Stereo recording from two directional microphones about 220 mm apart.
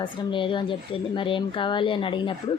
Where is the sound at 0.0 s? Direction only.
20° left (ahead or behind).